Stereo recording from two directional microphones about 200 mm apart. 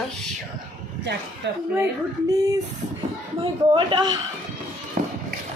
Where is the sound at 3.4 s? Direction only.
25° right (ahead or behind).